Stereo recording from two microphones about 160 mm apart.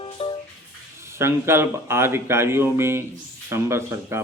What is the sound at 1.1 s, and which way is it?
Speech, 15° right (ahead or behind).